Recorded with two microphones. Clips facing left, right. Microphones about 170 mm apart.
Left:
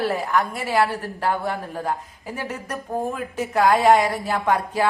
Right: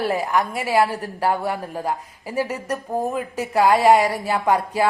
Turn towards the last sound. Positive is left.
turn(degrees=-10)  # may be behind; listen again after turning